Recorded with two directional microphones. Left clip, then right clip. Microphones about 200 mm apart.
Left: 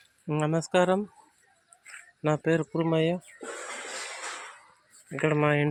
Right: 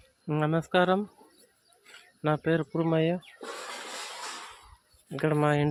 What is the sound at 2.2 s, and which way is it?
Speech, 5° left (ahead or behind).